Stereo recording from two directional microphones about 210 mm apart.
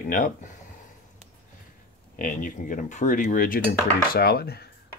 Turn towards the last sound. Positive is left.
turn(degrees=45)  # may be behind; listen again after turning